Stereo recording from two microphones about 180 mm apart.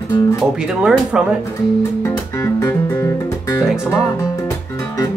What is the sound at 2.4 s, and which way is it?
Music, 15° left (ahead or behind).